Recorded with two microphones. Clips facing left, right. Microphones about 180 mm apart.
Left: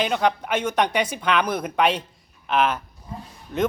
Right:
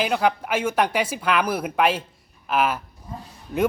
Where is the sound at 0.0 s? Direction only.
5° right (ahead or behind).